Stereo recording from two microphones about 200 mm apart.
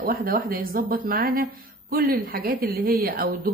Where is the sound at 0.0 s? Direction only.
45° right (ahead or behind).